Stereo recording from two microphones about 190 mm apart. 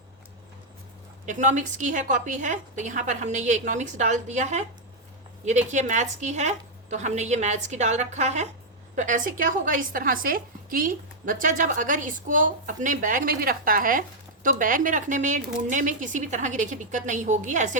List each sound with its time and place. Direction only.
1.2 s a woman's voice: 40° right (ahead or behind)